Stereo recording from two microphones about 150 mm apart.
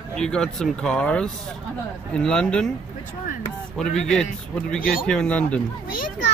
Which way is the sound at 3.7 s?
5° left (ahead or behind).